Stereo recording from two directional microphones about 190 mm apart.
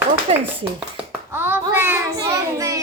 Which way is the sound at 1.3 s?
10° right (ahead or behind).